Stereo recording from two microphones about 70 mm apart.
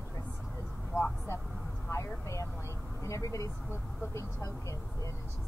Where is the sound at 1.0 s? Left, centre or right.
Left.